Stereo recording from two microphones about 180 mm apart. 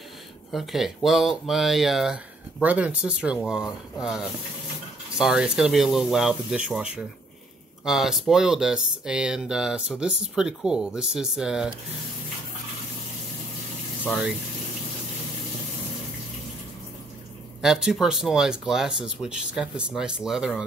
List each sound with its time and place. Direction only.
0.5 s speech: centre (ahead or behind)
17.6 s speech: 5° right (ahead or behind)